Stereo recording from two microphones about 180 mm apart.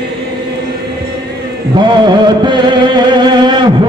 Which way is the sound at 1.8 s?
25° right (ahead or behind).